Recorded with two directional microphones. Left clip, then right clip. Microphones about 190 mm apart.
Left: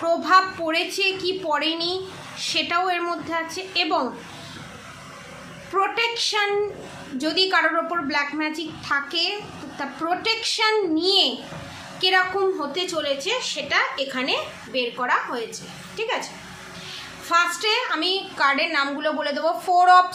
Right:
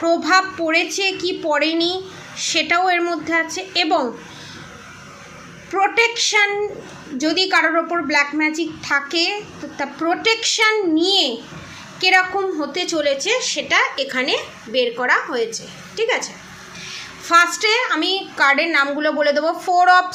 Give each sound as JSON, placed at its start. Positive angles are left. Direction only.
{"t": 0.0, "sound": "a woman's voice", "side_deg": -20}
{"t": 5.7, "sound": "a woman's voice", "side_deg": -20}